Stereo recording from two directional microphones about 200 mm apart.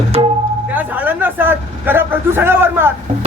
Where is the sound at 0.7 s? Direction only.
10° right (ahead or behind).